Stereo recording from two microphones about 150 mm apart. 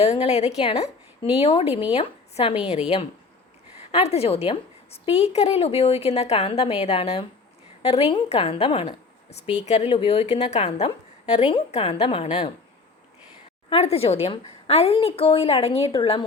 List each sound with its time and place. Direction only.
0.0 s a woman's voice: 45° left (ahead or behind)
13.7 s a woman's voice: 40° left (ahead or behind)